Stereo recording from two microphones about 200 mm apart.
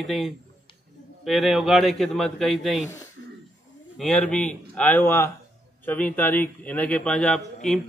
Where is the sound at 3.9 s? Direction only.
5° left (ahead or behind).